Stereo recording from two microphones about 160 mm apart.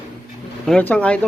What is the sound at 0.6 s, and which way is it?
Speech, 5° left (ahead or behind).